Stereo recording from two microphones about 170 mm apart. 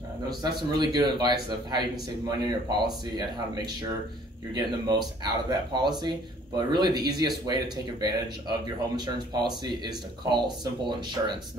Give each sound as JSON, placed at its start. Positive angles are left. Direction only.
{"t": 0.4, "sound": "speech", "side_deg": -25}